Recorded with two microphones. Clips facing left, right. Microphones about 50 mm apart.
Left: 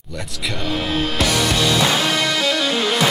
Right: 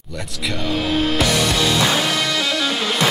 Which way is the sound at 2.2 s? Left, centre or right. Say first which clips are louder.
Left 1 dB; centre.